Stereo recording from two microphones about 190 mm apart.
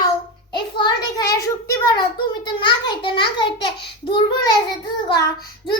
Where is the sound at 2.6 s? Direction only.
25° left (ahead or behind).